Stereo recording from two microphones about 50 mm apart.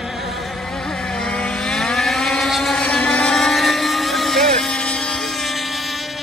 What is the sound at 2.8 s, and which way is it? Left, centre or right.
Motorboat, left.